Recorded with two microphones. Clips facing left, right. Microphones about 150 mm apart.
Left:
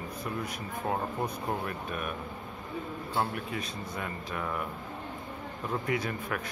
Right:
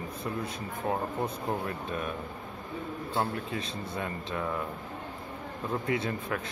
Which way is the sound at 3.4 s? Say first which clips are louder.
Right 1 dB; 30° right (ahead or behind).